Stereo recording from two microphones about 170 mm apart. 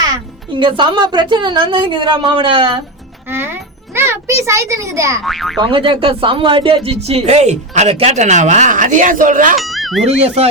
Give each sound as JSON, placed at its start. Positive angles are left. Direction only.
{"t": 0.5, "sound": "a woman's voice", "side_deg": -30}
{"t": 3.2, "sound": "a child's voice", "side_deg": -15}
{"t": 5.2, "sound": "speech", "side_deg": 0}
{"t": 5.5, "sound": "speech", "side_deg": -30}
{"t": 9.6, "sound": "a sound", "side_deg": 0}
{"t": 10.1, "sound": "speech", "side_deg": -40}